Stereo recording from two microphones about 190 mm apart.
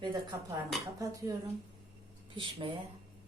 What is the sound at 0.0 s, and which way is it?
Speech, 20° right (ahead or behind).